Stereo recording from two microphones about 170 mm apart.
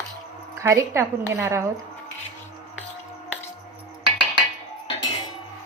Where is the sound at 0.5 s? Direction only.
15° right (ahead or behind).